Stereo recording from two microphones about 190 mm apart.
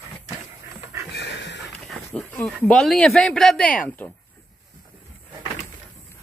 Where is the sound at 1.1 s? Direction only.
65° left (ahead or behind).